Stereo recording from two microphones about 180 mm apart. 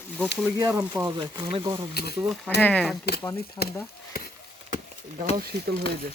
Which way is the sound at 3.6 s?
20° left (ahead or behind).